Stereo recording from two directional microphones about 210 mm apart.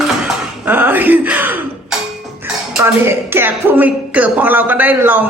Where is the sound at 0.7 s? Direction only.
10° right (ahead or behind).